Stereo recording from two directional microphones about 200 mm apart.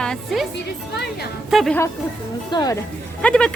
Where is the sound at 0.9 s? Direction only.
55° left (ahead or behind).